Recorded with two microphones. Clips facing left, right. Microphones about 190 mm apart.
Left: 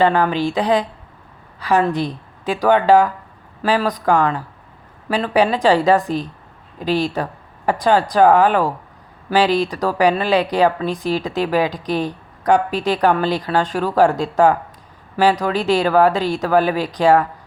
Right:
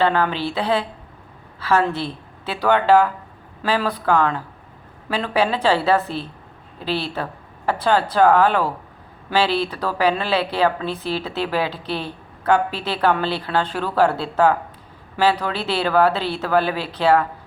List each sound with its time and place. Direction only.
0.0 s a woman's voice: 10° left (ahead or behind)